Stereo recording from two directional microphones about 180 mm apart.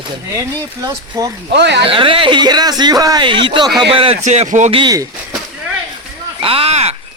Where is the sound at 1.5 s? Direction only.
70° right (ahead or behind).